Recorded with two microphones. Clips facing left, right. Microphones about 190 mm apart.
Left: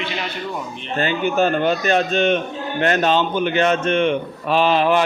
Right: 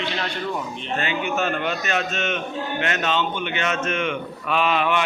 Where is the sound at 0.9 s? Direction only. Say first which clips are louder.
Left 6 dB; 35° left (ahead or behind).